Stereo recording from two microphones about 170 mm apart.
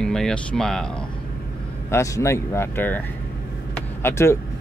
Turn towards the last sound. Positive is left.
turn(degrees=15)  # may be behind; listen again after turning